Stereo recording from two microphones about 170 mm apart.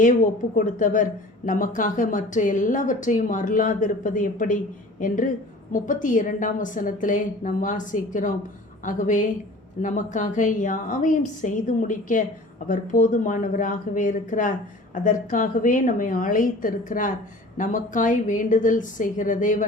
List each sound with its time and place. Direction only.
0.5 s a woman's voice: 50° left (ahead or behind)